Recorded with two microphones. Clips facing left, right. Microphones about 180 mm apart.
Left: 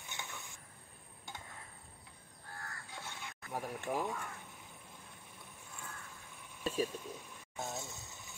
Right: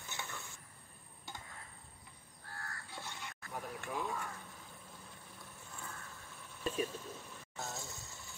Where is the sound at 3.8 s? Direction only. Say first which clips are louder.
Left 2 dB; 20° left (ahead or behind).